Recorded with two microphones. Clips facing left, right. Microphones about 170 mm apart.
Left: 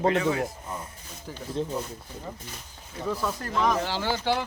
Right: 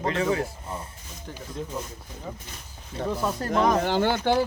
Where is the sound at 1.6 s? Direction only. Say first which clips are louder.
Left 5 dB; 25° left (ahead or behind).